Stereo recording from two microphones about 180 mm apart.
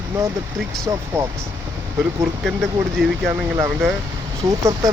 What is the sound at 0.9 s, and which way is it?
Speech, 20° right (ahead or behind).